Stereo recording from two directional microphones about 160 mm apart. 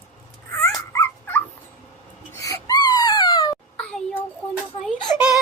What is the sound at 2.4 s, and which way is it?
Wail, 20° left (ahead or behind).